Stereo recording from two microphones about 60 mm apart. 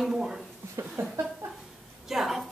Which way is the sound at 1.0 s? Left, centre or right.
Right.